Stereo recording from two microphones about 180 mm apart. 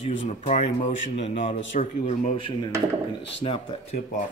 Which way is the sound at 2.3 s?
30° left (ahead or behind).